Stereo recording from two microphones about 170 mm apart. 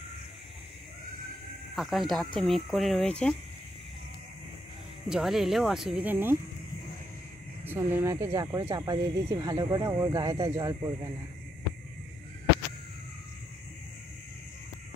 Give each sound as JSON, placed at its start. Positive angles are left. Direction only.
{"t": 1.8, "sound": "speech", "side_deg": 0}
{"t": 5.0, "sound": "speech", "side_deg": 0}
{"t": 7.6, "sound": "speech", "side_deg": -10}